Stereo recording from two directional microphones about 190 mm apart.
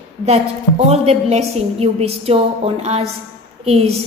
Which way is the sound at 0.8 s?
35° right (ahead or behind).